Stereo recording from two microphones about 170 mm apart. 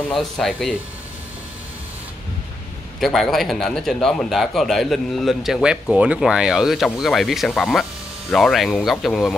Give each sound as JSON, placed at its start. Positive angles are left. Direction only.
{"t": 0.1, "sound": "speech", "side_deg": 0}
{"t": 3.0, "sound": "speech", "side_deg": 0}